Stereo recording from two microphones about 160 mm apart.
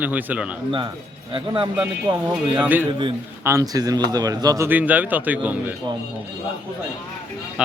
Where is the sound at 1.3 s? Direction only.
30° right (ahead or behind).